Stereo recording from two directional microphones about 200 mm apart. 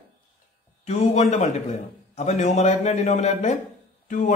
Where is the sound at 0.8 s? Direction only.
35° left (ahead or behind).